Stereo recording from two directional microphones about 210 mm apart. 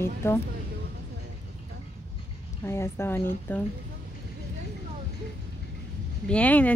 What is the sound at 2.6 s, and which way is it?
Speech, 10° left (ahead or behind).